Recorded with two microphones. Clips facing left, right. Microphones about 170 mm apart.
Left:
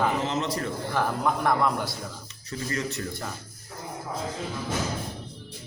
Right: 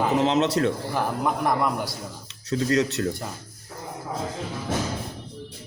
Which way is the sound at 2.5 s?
70° right (ahead or behind).